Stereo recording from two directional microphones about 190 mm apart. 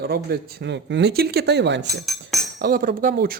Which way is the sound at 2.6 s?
55° right (ahead or behind).